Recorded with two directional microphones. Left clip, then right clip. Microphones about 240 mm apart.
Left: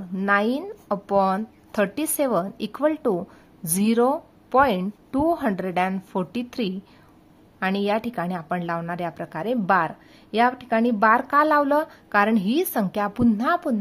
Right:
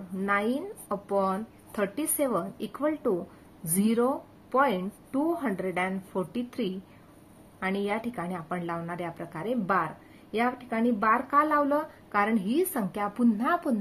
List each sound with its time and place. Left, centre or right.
0.2 s a woman's voice: left